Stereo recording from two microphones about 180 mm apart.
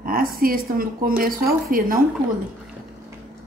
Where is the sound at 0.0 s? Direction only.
55° right (ahead or behind).